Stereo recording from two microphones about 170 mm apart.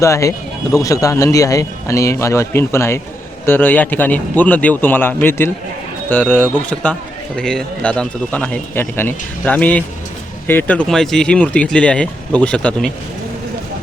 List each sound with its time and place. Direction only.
0.0 s speech: 20° left (ahead or behind)